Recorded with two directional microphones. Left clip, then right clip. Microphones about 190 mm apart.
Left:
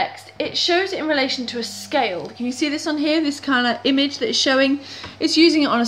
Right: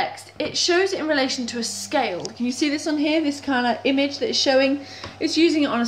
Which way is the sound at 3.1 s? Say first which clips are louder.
Left 4 dB; 40° left (ahead or behind).